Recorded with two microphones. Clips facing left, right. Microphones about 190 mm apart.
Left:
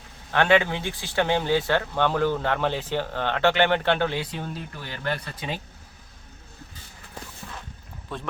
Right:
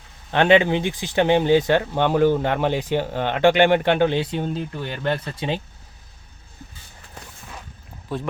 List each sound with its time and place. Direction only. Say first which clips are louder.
0.3 s speech: right 4 dB; 20° right (ahead or behind)
8.1 s speech: right 7 dB; 5° right (ahead or behind)